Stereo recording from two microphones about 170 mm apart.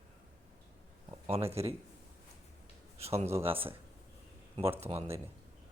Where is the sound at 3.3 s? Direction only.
15° right (ahead or behind).